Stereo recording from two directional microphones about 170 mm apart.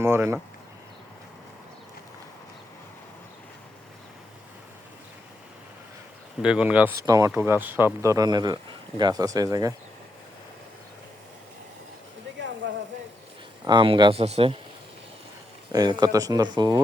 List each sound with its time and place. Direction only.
0.0 s speech: 15° right (ahead or behind)
6.4 s speech: 5° right (ahead or behind)
13.7 s speech: 25° right (ahead or behind)
15.7 s speech: 25° right (ahead or behind)